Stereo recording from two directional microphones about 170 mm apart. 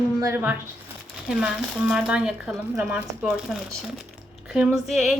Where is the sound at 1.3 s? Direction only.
5° right (ahead or behind).